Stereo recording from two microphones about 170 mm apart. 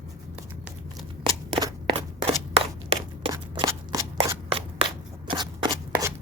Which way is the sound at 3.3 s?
20° right (ahead or behind).